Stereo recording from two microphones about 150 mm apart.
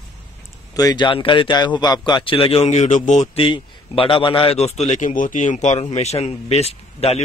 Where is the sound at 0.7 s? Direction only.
25° left (ahead or behind); by 3.3 s 55° left (ahead or behind).